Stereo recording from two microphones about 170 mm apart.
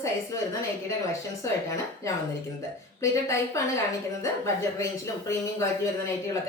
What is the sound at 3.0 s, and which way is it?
Speech, 15° left (ahead or behind).